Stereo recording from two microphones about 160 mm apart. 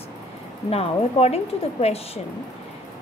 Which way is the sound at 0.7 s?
40° left (ahead or behind).